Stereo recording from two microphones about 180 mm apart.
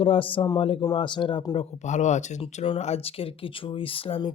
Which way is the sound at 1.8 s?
40° left (ahead or behind).